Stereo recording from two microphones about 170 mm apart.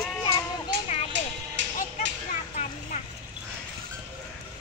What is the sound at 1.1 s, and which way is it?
Music, 90° right.